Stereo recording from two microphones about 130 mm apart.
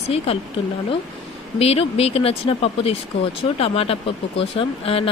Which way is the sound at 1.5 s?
50° left (ahead or behind).